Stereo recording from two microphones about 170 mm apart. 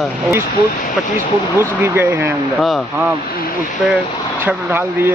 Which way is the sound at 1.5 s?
10° right (ahead or behind).